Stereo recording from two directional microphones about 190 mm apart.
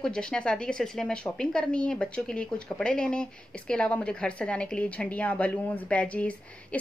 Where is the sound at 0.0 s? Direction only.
5° left (ahead or behind).